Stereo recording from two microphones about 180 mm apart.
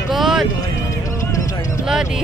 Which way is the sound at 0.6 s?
20° left (ahead or behind).